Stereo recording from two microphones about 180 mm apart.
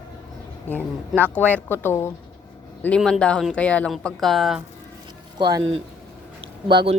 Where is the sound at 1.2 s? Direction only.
10° left (ahead or behind).